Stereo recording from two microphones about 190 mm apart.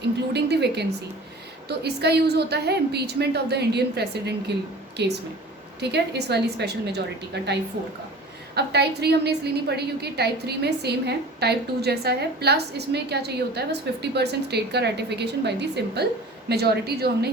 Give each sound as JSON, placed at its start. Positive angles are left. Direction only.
{"t": 0.3, "sound": "a woman's voice", "side_deg": -60}
{"t": 8.5, "sound": "a woman's voice", "side_deg": -60}